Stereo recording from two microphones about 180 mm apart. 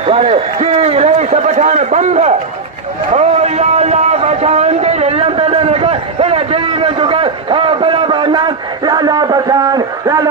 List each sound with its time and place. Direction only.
0.0 s a man's voice: 35° right (ahead or behind)